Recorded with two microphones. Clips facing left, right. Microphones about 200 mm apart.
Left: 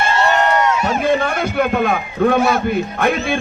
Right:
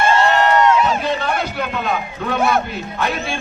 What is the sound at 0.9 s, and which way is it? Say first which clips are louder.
A man's voice: left 3 dB; 50° left (ahead or behind).